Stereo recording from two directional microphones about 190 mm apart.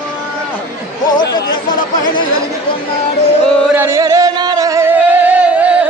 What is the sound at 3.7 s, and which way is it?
Music, 15° right (ahead or behind).